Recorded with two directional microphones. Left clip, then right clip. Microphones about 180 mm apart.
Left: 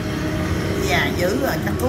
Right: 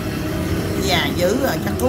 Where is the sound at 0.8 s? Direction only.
40° right (ahead or behind).